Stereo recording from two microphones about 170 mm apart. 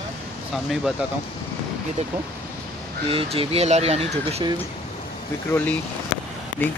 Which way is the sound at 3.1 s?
35° right (ahead or behind).